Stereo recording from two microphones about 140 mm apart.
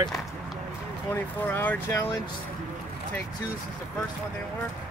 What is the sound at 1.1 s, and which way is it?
Speech, 15° left (ahead or behind).